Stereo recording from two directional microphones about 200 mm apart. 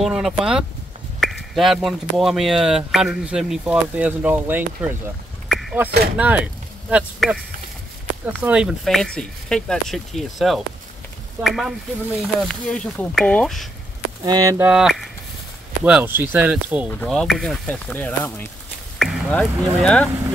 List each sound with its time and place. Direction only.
0.0 s speech: centre (ahead or behind)
5.5 s a sound: centre (ahead or behind)
6.1 s speech: 5° right (ahead or behind)
8.5 s speech: 5° right (ahead or behind)
14.2 s speech: 20° right (ahead or behind)
14.7 s speech: centre (ahead or behind)
17.0 s speech: 5° left (ahead or behind)